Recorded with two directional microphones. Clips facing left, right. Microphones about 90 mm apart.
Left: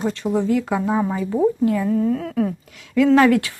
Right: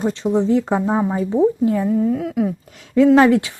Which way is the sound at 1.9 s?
5° right (ahead or behind).